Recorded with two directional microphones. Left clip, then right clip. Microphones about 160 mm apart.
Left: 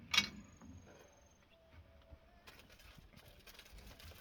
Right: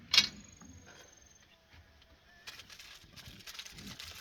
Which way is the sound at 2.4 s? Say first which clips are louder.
Right 11 dB; 55° left (ahead or behind).